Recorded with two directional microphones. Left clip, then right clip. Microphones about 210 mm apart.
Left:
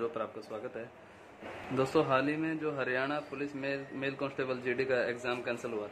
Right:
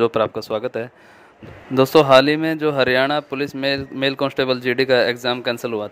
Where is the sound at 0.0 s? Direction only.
50° right (ahead or behind).